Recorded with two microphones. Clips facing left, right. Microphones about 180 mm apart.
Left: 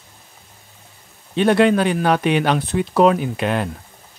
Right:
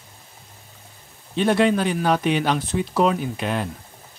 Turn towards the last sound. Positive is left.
turn(degrees=65)  # may be behind; listen again after turning